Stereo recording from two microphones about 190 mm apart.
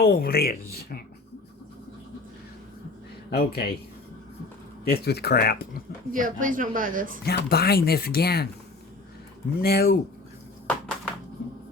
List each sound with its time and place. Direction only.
0.0 s speech: 55° left (ahead or behind)
3.2 s speech: 55° left (ahead or behind)
4.9 s speech: 55° left (ahead or behind)
6.1 s a woman's voice: 45° right (ahead or behind)
7.2 s speech: 55° left (ahead or behind)
9.6 s speech: 55° left (ahead or behind)
10.7 s a sound: centre (ahead or behind)